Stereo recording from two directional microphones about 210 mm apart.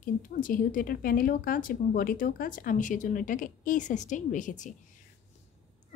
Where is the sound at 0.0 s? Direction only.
40° left (ahead or behind).